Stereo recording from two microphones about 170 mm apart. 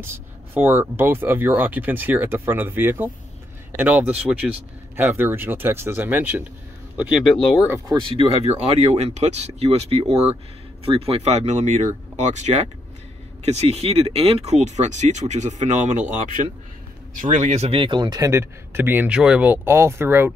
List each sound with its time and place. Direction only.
0.0 s a man's voice: 15° right (ahead or behind)
7.0 s speech: centre (ahead or behind)
8.0 s speech: 30° right (ahead or behind)
17.1 s a man's voice: 50° right (ahead or behind); by 20.3 s 15° right (ahead or behind)